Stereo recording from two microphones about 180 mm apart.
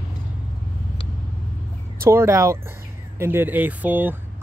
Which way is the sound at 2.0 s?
15° right (ahead or behind).